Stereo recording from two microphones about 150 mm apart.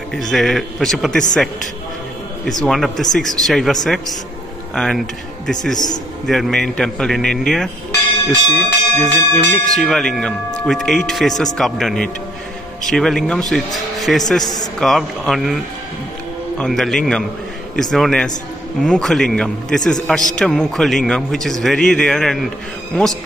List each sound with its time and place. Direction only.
0.1 s a man's voice: centre (ahead or behind)
2.4 s a man's voice: 5° left (ahead or behind)
14.4 s a man's voice: 25° left (ahead or behind)
14.8 s a man's voice: centre (ahead or behind)